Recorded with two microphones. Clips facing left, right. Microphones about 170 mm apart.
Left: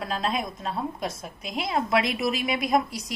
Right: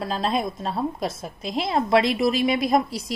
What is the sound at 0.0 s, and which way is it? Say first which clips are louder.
A woman's voice: right 4 dB; 30° right (ahead or behind).